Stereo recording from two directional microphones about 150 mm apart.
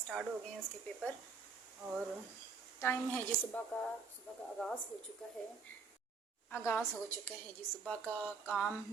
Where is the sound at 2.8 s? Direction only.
15° left (ahead or behind).